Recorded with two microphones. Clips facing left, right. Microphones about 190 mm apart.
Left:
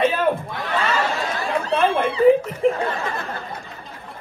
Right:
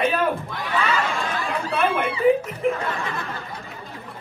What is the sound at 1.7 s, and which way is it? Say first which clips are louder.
Speech: left 3 dB; 30° left (ahead or behind).